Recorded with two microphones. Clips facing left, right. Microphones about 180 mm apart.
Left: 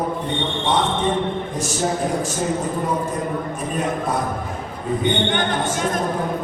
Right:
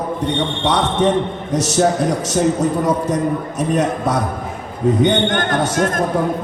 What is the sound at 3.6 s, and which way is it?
Speech, 75° right (ahead or behind).